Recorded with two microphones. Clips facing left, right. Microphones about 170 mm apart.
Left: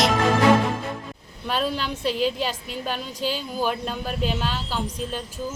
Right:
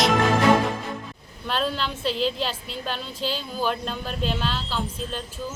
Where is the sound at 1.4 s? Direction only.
10° left (ahead or behind).